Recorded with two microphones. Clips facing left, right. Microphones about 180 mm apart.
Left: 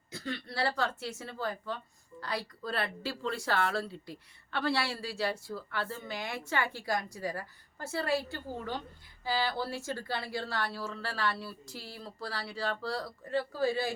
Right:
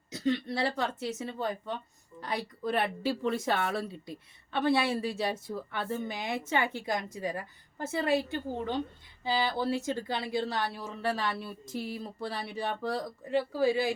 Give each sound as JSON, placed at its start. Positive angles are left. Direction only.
{"t": 0.1, "sound": "speech", "side_deg": -20}